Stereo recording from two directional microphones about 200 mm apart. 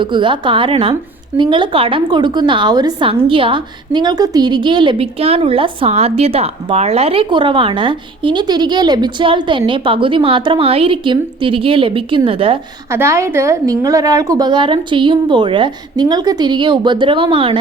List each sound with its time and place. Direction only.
0.0 s a woman's voice: 25° right (ahead or behind)
12.9 s a woman's voice: 15° right (ahead or behind)